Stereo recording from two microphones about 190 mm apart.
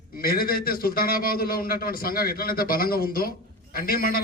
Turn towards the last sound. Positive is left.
turn(degrees=50)  # may be behind; listen again after turning